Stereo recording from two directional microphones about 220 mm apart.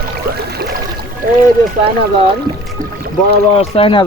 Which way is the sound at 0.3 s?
45° right (ahead or behind).